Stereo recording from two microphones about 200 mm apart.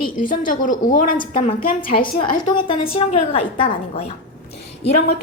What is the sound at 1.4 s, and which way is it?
A woman's voice, 25° left (ahead or behind).